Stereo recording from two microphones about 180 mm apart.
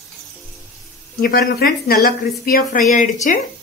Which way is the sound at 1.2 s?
55° left (ahead or behind).